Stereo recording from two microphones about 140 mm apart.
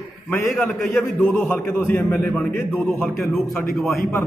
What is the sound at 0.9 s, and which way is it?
A man's voice, 15° left (ahead or behind).